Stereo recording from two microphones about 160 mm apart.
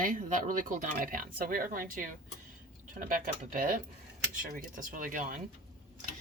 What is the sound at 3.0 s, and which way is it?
Speech, 60° right (ahead or behind).